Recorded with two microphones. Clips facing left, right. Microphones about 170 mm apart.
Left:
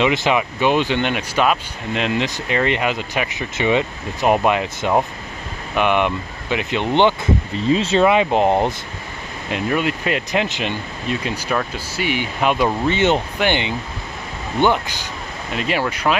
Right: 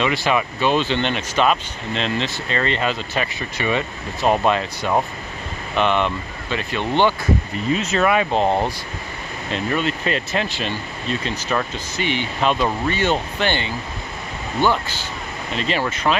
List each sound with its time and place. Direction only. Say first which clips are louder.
0.0 s speech: left 2 dB; 20° left (ahead or behind)
7.7 s speech: left 4 dB; 30° left (ahead or behind); by 16.2 s 10° left (ahead or behind)